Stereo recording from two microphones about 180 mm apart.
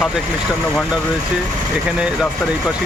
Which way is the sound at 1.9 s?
5° right (ahead or behind).